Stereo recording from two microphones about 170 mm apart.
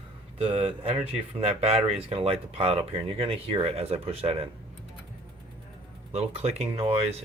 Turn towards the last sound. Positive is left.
turn(degrees=-40)  # may be behind; listen again after turning